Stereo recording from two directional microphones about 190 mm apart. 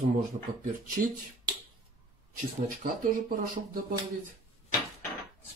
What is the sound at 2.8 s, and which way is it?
Speech, 50° right (ahead or behind).